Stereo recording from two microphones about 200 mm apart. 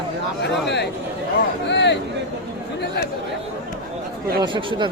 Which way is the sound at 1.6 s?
60° left (ahead or behind).